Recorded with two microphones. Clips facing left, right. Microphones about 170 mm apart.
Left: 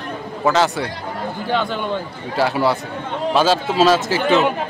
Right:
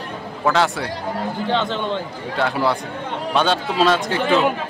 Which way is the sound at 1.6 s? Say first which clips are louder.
Even; 25° right (ahead or behind).